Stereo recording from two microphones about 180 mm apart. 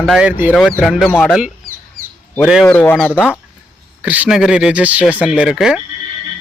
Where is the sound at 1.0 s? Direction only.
10° left (ahead or behind).